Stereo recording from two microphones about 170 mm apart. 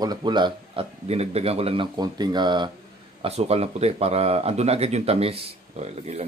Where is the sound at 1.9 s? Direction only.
25° right (ahead or behind).